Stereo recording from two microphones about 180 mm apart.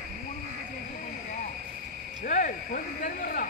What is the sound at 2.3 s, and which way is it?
Speech, 50° left (ahead or behind).